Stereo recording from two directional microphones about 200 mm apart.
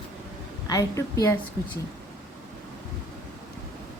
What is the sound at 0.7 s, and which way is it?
Speech, 15° left (ahead or behind).